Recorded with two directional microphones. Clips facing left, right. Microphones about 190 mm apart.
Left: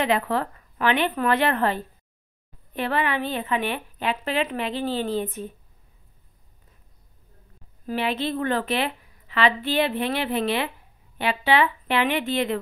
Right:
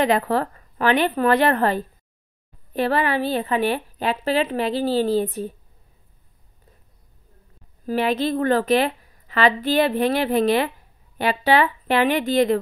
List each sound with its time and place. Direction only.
0.0 s a woman's voice: 40° right (ahead or behind)
7.8 s a woman's voice: 40° right (ahead or behind)